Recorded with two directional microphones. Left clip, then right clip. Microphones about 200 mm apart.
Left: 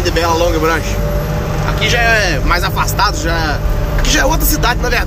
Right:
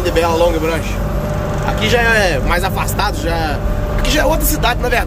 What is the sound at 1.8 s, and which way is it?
Speech, 20° right (ahead or behind).